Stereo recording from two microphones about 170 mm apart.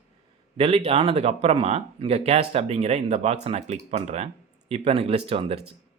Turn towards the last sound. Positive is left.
turn(degrees=-35)  # may be behind; listen again after turning